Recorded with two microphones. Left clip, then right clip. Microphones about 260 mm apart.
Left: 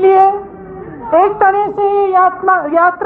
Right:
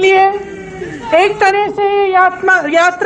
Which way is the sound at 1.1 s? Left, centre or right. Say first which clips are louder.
Even; left.